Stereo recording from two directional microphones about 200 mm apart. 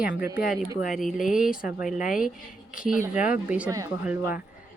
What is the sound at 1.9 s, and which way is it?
Speech, 40° left (ahead or behind).